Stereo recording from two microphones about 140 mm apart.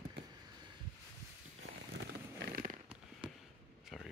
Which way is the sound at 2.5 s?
75° right (ahead or behind).